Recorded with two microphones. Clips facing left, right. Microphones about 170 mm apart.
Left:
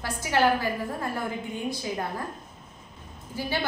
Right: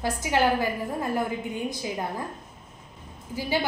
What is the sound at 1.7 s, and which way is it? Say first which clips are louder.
Speech: even; 15° right (ahead or behind).